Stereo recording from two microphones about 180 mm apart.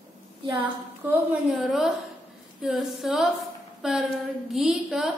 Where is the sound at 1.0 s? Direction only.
10° right (ahead or behind).